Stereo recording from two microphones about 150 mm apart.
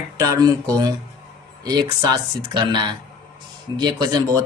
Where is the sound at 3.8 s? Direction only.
25° right (ahead or behind).